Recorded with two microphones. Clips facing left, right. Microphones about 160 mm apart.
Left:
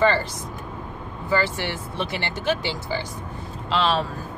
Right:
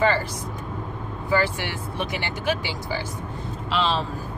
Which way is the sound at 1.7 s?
10° right (ahead or behind).